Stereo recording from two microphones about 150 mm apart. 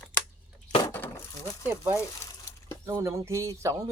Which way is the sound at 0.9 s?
15° left (ahead or behind).